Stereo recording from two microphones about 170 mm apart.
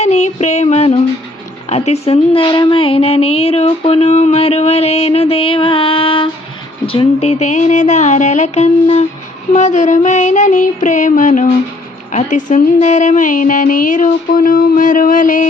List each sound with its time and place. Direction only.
0.0 s speech: 40° left (ahead or behind)